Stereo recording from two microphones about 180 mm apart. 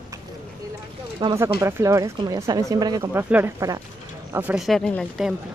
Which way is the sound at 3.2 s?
10° right (ahead or behind).